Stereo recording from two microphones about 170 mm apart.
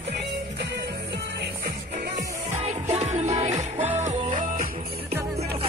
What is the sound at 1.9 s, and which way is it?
Music, 50° right (ahead or behind).